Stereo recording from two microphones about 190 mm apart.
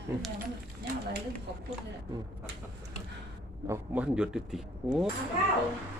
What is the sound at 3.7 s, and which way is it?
Speech, 5° right (ahead or behind).